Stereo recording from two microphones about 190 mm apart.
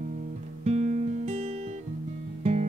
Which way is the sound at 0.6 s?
35° right (ahead or behind).